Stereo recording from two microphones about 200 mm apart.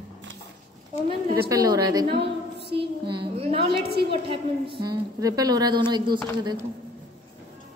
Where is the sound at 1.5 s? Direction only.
20° right (ahead or behind).